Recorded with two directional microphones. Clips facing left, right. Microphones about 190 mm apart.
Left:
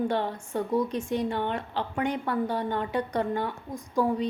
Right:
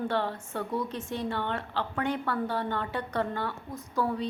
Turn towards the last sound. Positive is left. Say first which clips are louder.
# left 4 dB
turn(degrees=15)  # may be behind; listen again after turning